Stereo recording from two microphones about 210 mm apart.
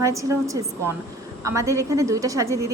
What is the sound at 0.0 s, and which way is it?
A woman's voice, 15° right (ahead or behind).